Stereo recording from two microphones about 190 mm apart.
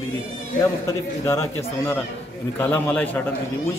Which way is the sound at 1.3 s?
15° left (ahead or behind).